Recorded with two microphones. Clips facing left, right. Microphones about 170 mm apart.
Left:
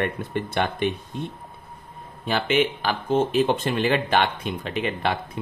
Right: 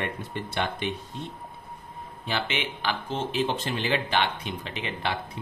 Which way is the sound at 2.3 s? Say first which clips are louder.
Left 9 dB; 45° left (ahead or behind).